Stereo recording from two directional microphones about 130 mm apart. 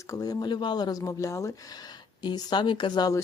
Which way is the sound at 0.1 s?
30° left (ahead or behind).